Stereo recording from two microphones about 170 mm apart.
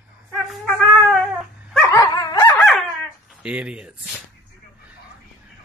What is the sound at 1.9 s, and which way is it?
Dog, 20° left (ahead or behind).